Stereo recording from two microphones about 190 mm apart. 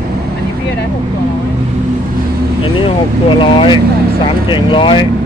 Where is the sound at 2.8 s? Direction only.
25° left (ahead or behind).